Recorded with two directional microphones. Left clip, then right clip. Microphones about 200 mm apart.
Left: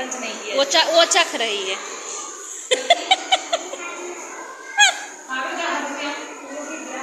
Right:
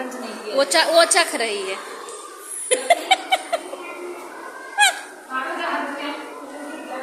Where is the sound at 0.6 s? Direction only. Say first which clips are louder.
Even; 20° right (ahead or behind).